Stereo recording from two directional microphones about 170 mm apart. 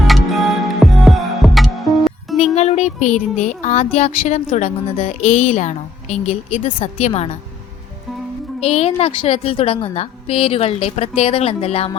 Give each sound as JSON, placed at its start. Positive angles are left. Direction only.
{"t": 0.0, "sound": "music", "side_deg": 0}
{"t": 2.4, "sound": "a woman's voice", "side_deg": 40}
{"t": 8.6, "sound": "a woman's voice", "side_deg": 35}